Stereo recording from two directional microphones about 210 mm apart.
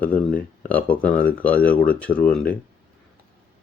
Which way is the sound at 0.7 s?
5° left (ahead or behind).